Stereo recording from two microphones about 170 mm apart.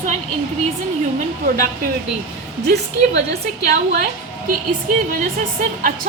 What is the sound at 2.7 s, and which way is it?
A woman's voice, 80° right.